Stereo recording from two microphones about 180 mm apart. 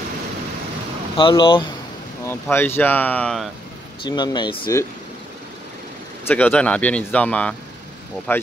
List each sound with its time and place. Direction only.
1.1 s speech: 25° left (ahead or behind)
2.5 s speech: 10° left (ahead or behind)
4.0 s speech: 25° left (ahead or behind)
6.2 s speech: 10° left (ahead or behind)